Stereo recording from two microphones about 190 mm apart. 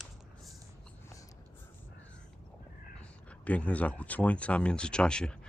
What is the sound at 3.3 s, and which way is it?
Speech, 5° left (ahead or behind).